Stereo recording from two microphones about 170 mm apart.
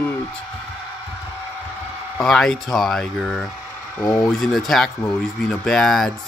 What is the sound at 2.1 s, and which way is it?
Speech, centre (ahead or behind).